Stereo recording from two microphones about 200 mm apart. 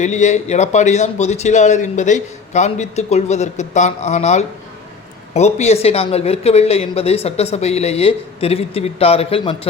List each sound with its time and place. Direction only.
0.0 s speech: 35° left (ahead or behind)